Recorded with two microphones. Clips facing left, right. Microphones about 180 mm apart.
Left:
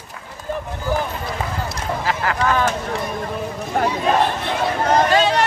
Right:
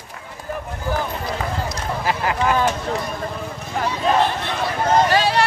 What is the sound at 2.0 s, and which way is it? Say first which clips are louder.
Speech: right 1 dB; 20° right (ahead or behind).